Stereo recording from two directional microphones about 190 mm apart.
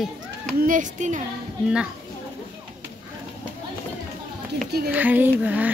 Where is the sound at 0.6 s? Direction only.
45° right (ahead or behind).